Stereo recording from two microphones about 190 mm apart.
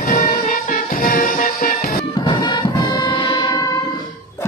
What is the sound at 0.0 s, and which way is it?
Music, 50° left (ahead or behind).